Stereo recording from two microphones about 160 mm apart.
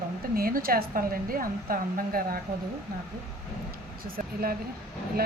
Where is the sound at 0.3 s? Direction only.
65° right (ahead or behind).